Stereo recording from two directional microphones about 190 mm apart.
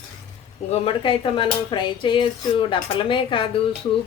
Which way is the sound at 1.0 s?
25° left (ahead or behind).